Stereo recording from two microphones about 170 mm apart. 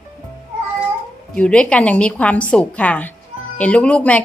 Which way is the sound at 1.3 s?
5° left (ahead or behind).